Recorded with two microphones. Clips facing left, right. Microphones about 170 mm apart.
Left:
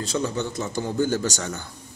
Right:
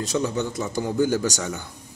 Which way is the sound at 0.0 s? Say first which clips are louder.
Right 2 dB; 15° right (ahead or behind).